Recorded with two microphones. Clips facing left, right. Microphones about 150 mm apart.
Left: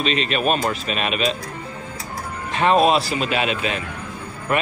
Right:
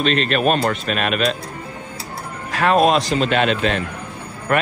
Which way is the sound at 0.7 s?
50° right (ahead or behind).